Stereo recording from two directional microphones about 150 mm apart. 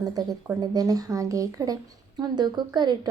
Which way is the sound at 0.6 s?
25° right (ahead or behind).